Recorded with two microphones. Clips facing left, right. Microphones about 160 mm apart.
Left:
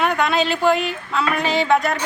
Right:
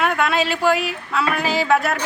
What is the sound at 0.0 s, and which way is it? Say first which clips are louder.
A woman's voice: left 1 dB; centre (ahead or behind).